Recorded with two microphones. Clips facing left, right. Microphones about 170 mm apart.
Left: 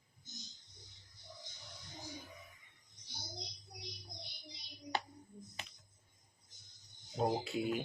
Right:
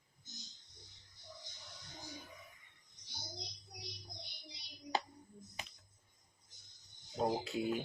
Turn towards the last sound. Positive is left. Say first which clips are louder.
# left 1 dB
turn(degrees=0)  # may be behind; listen again after turning